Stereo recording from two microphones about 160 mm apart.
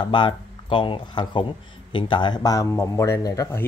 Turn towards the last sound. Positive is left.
turn(degrees=20)  # may be behind; listen again after turning